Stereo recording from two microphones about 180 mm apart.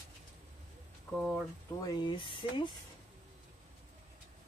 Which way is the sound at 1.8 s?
25° left (ahead or behind).